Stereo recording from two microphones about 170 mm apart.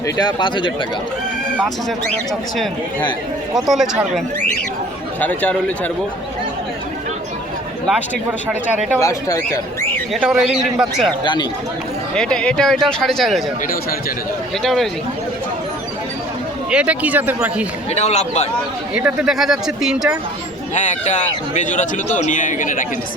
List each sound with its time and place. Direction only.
0.2 s speech: 25° left (ahead or behind)
3.7 s a man's voice: centre (ahead or behind)
5.2 s speech: 10° left (ahead or behind)
8.4 s speech: 10° right (ahead or behind)
9.0 s speech: 20° left (ahead or behind)
10.1 s a man's voice: 5° right (ahead or behind)
11.2 s speech: 25° left (ahead or behind)
12.1 s a man's voice: 5° left (ahead or behind)
14.6 s a man's voice: centre (ahead or behind)
16.7 s speech: 10° right (ahead or behind)
17.9 s speech: 40° left (ahead or behind)
18.9 s a man's voice: 5° right (ahead or behind)
20.7 s a man's voice: 45° left (ahead or behind)